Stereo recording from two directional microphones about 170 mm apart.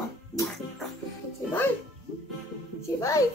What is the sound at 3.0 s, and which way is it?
Speech, 20° left (ahead or behind).